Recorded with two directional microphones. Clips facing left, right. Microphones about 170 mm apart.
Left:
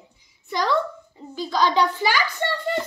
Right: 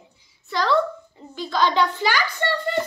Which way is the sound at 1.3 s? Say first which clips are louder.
Even; 5° left (ahead or behind).